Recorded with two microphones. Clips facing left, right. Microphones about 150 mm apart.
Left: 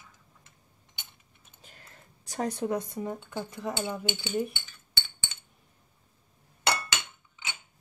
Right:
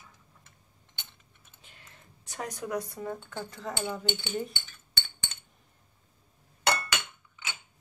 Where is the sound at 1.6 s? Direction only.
40° left (ahead or behind); by 5.0 s 10° left (ahead or behind).